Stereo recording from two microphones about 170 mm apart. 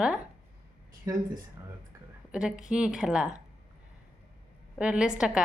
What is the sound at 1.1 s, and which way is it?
Speech, 20° right (ahead or behind).